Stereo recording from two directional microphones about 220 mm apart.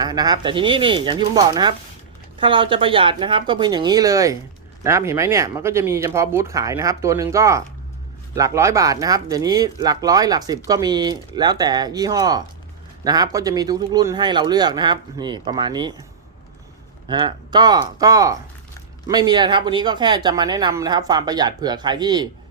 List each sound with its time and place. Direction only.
0.0 s speech: 20° right (ahead or behind)
17.1 s speech: 20° right (ahead or behind)